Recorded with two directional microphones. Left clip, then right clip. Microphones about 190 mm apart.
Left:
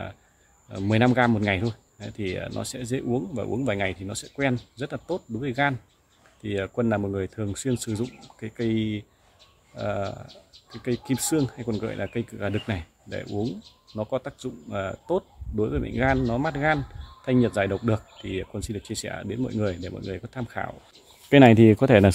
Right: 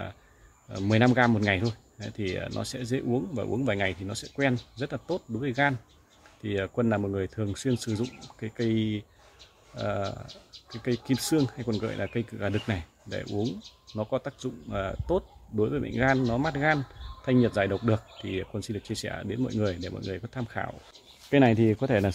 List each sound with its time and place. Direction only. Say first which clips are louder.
0.7 s speech: left 2 dB; 15° left (ahead or behind)
21.3 s speech: left 7 dB; 65° left (ahead or behind)